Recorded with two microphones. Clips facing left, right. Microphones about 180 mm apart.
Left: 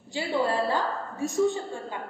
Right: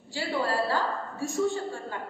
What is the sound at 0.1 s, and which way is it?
A woman's voice, 20° left (ahead or behind).